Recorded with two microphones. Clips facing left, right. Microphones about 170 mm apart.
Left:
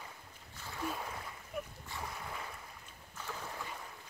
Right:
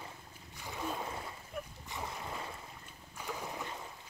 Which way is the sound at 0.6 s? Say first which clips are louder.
Right 1 dB; 15° right (ahead or behind).